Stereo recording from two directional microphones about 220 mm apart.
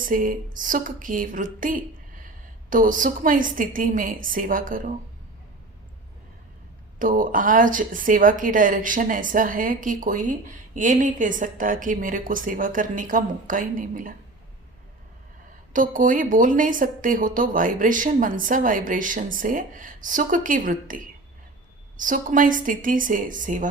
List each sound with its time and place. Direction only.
0.1 s speech: 40° right (ahead or behind)
7.0 s speech: 35° right (ahead or behind)
15.7 s speech: 35° right (ahead or behind)